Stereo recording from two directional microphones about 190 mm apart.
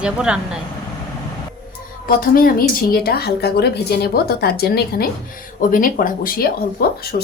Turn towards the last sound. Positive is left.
turn(degrees=55)  # may be behind; listen again after turning